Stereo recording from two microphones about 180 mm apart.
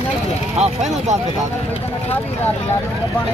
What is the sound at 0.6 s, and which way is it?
Speech, 40° right (ahead or behind).